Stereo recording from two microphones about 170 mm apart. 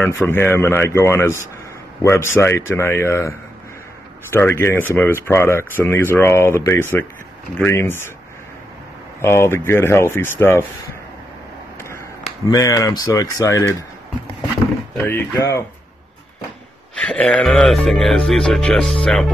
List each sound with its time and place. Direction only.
0.0 s speech: 15° left (ahead or behind)
9.2 s speech: 15° left (ahead or behind)
12.4 s speech: 20° left (ahead or behind)
15.0 s speech: 15° left (ahead or behind)
17.0 s speech: 5° left (ahead or behind)